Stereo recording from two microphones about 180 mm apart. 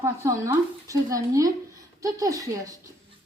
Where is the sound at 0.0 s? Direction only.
15° right (ahead or behind).